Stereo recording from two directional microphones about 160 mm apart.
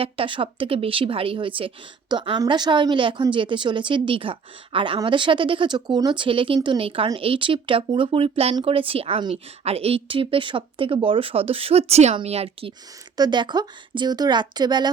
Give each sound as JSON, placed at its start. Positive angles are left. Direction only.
{"t": 0.0, "sound": "a woman's voice", "side_deg": -35}
{"t": 13.1, "sound": "a woman's voice", "side_deg": -25}